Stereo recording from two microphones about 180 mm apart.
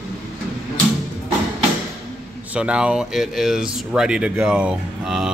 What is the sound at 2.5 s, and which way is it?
Speech, 5° right (ahead or behind).